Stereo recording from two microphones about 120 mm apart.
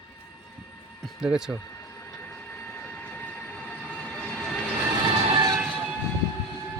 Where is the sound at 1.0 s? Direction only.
5° right (ahead or behind).